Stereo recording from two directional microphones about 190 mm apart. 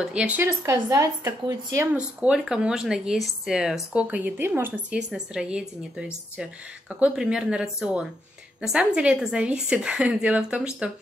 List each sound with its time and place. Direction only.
0.0 s speech: 5° right (ahead or behind)
2.1 s speech: centre (ahead or behind)